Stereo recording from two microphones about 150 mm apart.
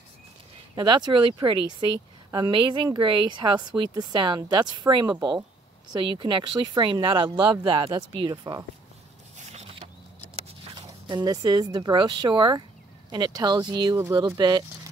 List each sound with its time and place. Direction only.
0.7 s a woman's voice: 30° right (ahead or behind)
9.4 s a sound: 45° right (ahead or behind)
10.8 s a woman's voice: 30° right (ahead or behind)